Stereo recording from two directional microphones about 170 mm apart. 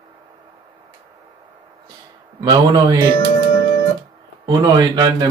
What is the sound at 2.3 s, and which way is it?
Speech, 25° right (ahead or behind).